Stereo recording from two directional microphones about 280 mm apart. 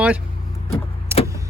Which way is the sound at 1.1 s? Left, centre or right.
Centre.